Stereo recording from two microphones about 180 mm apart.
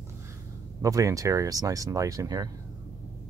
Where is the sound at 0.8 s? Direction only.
20° right (ahead or behind).